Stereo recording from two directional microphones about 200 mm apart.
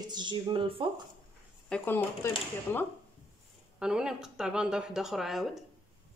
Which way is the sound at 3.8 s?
5° right (ahead or behind).